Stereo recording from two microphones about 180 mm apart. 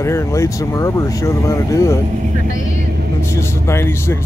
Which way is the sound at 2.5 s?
45° left (ahead or behind).